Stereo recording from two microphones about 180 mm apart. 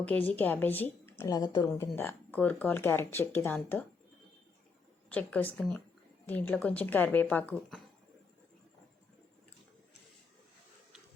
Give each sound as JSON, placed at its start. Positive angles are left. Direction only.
{"t": 0.0, "sound": "speech", "side_deg": 10}
{"t": 5.0, "sound": "speech", "side_deg": 10}